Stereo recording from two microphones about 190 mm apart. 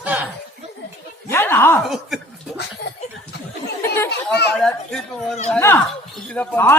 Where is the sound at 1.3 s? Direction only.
10° left (ahead or behind).